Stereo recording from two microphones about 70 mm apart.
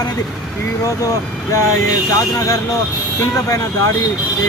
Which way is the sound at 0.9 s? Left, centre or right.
Left.